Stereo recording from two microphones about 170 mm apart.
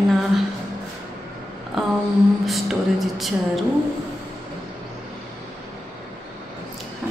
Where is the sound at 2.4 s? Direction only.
Centre (ahead or behind).